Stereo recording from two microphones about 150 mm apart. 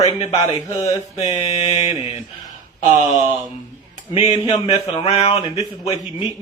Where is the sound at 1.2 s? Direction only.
45° left (ahead or behind).